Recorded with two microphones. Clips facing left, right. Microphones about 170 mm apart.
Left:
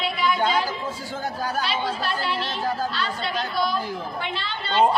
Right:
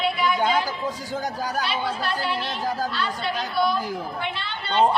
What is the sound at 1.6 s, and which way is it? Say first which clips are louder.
Speech: even; 55° right (ahead or behind).